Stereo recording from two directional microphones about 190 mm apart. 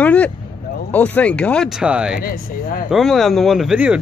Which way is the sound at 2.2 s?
50° left (ahead or behind).